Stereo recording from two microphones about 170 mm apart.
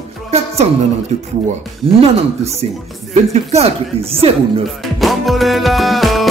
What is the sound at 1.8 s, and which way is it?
Speech, 35° right (ahead or behind).